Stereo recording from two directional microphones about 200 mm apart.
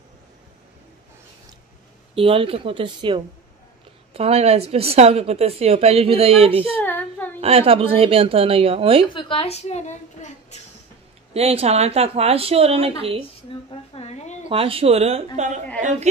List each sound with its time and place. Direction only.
2.1 s a woman's voice: 25° right (ahead or behind)
6.8 s a sound: 10° left (ahead or behind)
7.3 s a woman's voice: 30° right (ahead or behind)
9.1 s a woman's voice: 25° left (ahead or behind)
11.3 s a woman's voice: 30° right (ahead or behind)
13.7 s a sound: 30° left (ahead or behind)
14.5 s a woman's voice: 30° right (ahead or behind)